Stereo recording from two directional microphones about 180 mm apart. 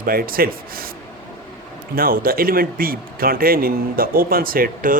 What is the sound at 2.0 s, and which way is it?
A man's voice, 55° right (ahead or behind).